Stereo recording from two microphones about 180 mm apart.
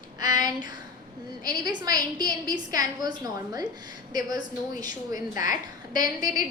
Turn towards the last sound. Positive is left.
turn(degrees=-20)  # may be behind; listen again after turning